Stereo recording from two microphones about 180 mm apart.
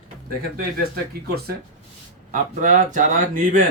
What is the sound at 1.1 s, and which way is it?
Speech, 60° right (ahead or behind).